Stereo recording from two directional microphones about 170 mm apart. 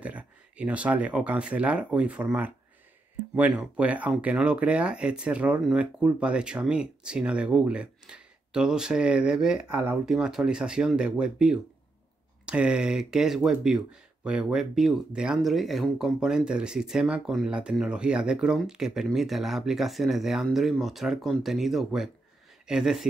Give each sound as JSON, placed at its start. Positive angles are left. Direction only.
{"t": 0.0, "sound": "speech", "side_deg": -10}